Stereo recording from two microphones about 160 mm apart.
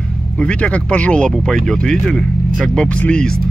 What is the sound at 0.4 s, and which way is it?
Speech, 5° left (ahead or behind).